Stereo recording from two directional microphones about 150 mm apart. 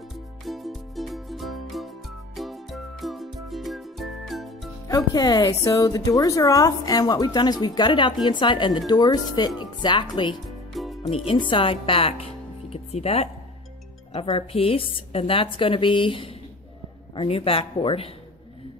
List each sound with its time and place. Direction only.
0.5 s music: centre (ahead or behind)
4.8 s speech: 25° left (ahead or behind)
10.7 s music: centre (ahead or behind)
11.2 s a woman's voice: 35° left (ahead or behind)